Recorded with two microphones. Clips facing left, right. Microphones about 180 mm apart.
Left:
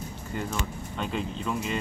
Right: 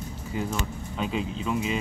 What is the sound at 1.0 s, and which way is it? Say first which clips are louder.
Speech: right 2 dB; centre (ahead or behind).